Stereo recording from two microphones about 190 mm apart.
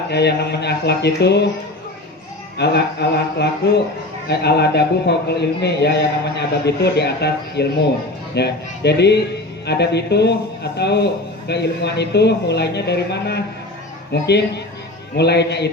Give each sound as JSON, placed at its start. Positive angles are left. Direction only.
{"t": 0.1, "sound": "a man's voice", "side_deg": 60}
{"t": 2.6, "sound": "a man's voice", "side_deg": 60}